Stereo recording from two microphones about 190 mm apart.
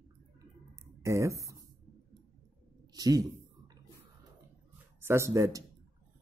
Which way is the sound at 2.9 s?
20° right (ahead or behind).